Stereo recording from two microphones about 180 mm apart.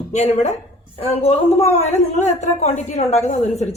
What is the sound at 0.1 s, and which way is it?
A woman's voice, 40° left (ahead or behind).